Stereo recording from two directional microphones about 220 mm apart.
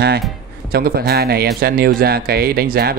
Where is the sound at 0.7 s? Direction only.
45° right (ahead or behind).